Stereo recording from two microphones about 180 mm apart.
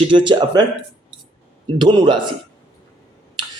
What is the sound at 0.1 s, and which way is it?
Speech, 25° right (ahead or behind).